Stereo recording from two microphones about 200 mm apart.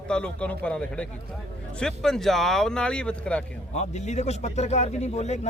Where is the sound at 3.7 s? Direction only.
35° left (ahead or behind).